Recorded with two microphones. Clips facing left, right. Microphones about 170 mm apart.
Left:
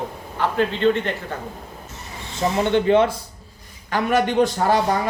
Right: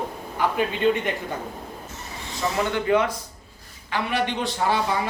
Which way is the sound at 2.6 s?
25° left (ahead or behind).